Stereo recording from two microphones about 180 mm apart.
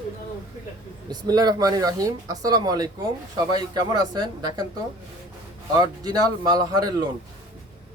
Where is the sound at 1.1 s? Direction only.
20° right (ahead or behind).